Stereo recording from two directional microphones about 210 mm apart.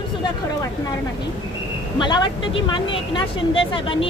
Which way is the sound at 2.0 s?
20° left (ahead or behind).